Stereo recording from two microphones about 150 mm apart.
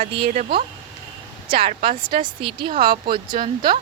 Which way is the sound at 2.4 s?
35° right (ahead or behind).